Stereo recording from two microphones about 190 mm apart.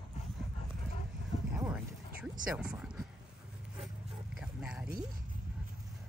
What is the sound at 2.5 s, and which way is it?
Speech, 5° right (ahead or behind).